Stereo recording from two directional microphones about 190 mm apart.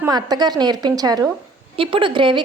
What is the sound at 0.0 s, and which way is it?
A woman's voice, 20° right (ahead or behind).